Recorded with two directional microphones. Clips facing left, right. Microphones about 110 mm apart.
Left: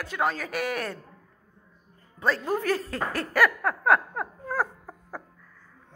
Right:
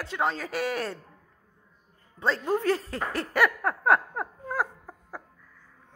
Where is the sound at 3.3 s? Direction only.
25° right (ahead or behind).